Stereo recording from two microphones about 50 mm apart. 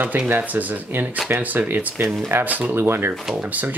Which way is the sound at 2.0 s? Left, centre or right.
Right.